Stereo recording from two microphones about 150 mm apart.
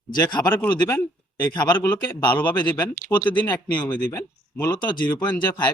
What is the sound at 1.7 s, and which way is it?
Speech, 15° left (ahead or behind).